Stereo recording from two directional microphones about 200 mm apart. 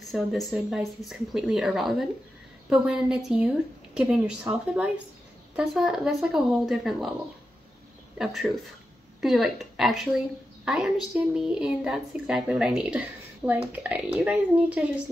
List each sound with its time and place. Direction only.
0.0 s speech: centre (ahead or behind)
8.2 s a woman's voice: centre (ahead or behind)